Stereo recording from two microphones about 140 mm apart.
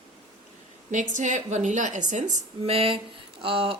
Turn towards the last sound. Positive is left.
turn(degrees=-40)  # may be behind; listen again after turning